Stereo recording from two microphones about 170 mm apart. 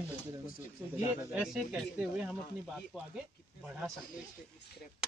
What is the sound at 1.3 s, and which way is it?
Speech, 5° right (ahead or behind).